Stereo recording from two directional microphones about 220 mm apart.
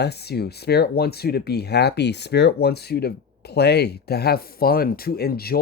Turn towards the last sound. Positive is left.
turn(degrees=45)  # may be behind; listen again after turning